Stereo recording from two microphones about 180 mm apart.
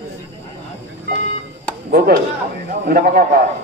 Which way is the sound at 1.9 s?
60° right (ahead or behind).